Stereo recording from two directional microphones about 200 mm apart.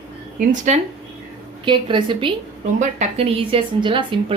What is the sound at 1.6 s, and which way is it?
Speech, 25° right (ahead or behind).